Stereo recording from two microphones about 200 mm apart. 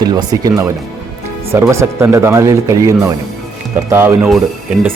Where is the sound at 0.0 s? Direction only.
20° right (ahead or behind).